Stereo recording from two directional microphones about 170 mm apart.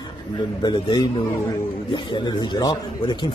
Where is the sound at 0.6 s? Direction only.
25° left (ahead or behind).